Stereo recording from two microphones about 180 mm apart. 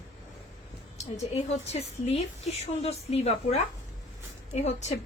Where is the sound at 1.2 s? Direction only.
35° left (ahead or behind).